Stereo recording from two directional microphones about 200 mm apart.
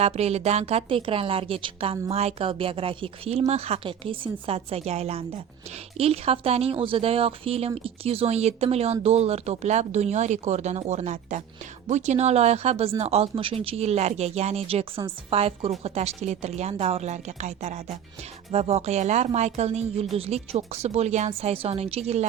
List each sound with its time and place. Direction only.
0.0 s a woman's voice: 30° right (ahead or behind)